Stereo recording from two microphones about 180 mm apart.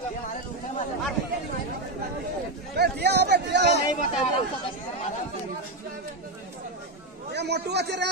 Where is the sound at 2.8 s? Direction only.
65° right (ahead or behind).